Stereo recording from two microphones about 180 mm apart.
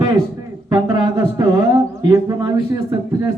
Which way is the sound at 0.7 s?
25° right (ahead or behind).